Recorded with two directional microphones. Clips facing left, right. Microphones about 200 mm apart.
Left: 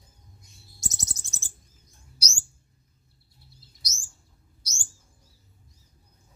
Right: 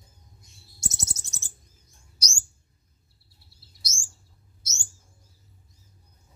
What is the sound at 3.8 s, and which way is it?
Chirp, 25° right (ahead or behind).